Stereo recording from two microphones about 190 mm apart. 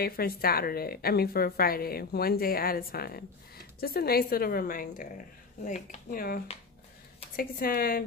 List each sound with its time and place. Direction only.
0.0 s a woman's voice: 50° left (ahead or behind)